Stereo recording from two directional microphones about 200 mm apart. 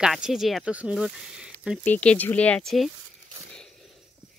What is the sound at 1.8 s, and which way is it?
Speech, 5° left (ahead or behind).